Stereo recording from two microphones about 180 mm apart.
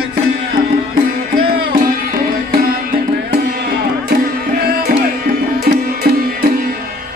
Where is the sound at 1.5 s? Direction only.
50° right (ahead or behind).